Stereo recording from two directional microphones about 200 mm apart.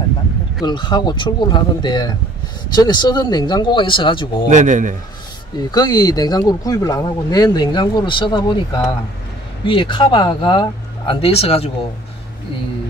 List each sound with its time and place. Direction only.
0.7 s speech: 20° left (ahead or behind)
4.5 s a man's voice: 40° right (ahead or behind)
5.7 s speech: 20° left (ahead or behind)